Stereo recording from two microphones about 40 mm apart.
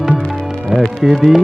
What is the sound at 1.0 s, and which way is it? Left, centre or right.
Speech, centre.